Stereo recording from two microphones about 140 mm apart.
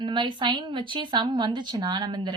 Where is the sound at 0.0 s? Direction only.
35° right (ahead or behind).